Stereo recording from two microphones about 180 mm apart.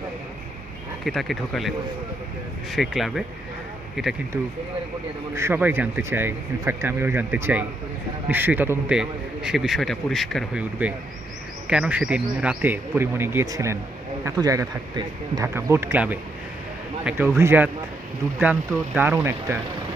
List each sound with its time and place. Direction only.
1.0 s a man's voice: centre (ahead or behind)
2.7 s a man's voice: centre (ahead or behind)
5.3 s a man's voice: 15° right (ahead or behind)